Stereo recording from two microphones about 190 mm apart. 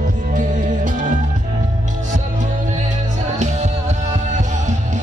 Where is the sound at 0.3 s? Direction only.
45° right (ahead or behind).